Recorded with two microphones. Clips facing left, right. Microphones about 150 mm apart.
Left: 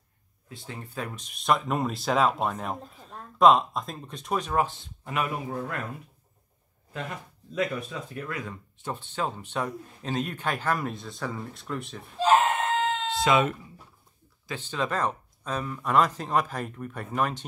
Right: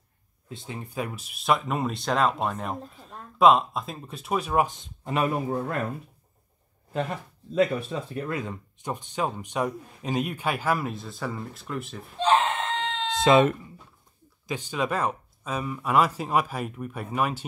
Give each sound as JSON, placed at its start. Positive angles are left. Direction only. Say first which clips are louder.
{"t": 0.5, "sound": "speech", "louder": "right 3 dB", "side_deg": -20}
{"t": 5.1, "sound": "speech", "louder": "right 5 dB", "side_deg": -35}
{"t": 7.5, "sound": "speech", "louder": "right 6 dB", "side_deg": -30}
{"t": 13.2, "sound": "speech", "louder": "right 5 dB", "side_deg": -30}
{"t": 14.4, "sound": "speech", "louder": "right 2 dB", "side_deg": -15}